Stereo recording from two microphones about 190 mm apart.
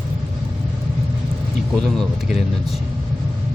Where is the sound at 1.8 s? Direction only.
Centre (ahead or behind).